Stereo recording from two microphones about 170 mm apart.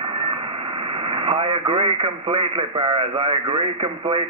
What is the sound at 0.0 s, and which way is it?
Speech, 30° right (ahead or behind).